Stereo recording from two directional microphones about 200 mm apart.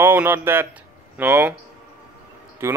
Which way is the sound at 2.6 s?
15° right (ahead or behind).